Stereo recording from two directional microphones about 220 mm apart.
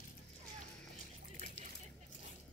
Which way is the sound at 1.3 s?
35° right (ahead or behind).